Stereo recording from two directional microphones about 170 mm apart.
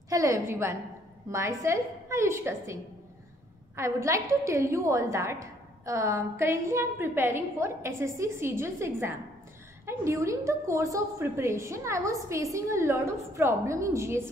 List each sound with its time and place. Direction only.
0.1 s a woman's voice: 20° right (ahead or behind)